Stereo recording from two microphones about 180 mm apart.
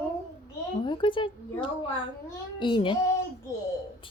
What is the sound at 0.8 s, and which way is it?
A woman's voice, 25° left (ahead or behind).